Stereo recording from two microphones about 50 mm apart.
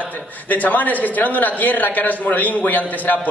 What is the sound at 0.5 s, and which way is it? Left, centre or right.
A man's voice, left.